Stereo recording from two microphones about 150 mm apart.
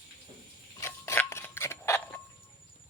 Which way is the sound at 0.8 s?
15° left (ahead or behind).